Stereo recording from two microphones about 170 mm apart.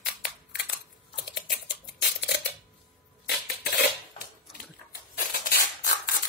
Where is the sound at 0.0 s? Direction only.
75° left (ahead or behind).